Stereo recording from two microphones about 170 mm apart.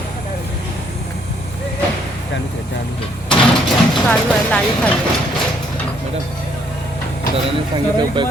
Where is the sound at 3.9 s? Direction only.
5° left (ahead or behind).